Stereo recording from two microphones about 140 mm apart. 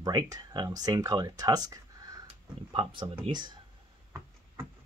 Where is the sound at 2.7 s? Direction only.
35° right (ahead or behind).